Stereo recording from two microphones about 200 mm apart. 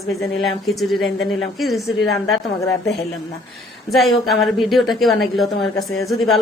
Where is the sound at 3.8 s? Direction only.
Centre (ahead or behind).